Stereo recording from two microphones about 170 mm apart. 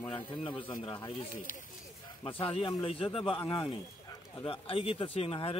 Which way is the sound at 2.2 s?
35° left (ahead or behind).